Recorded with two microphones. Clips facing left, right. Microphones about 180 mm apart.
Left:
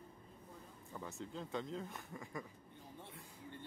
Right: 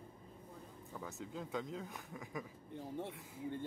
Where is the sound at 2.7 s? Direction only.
75° right (ahead or behind).